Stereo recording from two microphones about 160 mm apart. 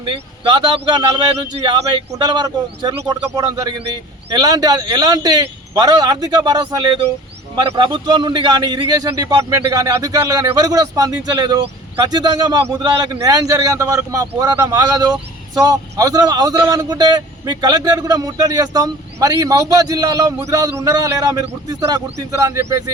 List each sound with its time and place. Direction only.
0.0 s a man's voice: 25° right (ahead or behind)
1.5 s a man's voice: 40° right (ahead or behind)
2.1 s a man's voice: 25° right (ahead or behind)